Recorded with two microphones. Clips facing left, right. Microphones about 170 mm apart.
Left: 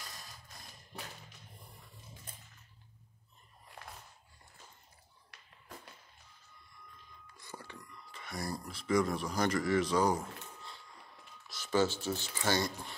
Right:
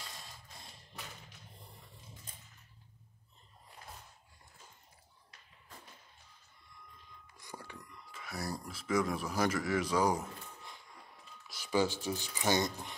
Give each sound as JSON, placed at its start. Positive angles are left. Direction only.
{"t": 0.0, "sound": "mechanisms", "side_deg": -25}
{"t": 3.8, "sound": "a sound", "side_deg": 80}
{"t": 5.3, "sound": "music", "side_deg": 75}
{"t": 7.3, "sound": "speech", "side_deg": -15}